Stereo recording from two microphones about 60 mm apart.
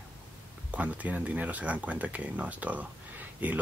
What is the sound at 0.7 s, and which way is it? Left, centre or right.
Speech, right.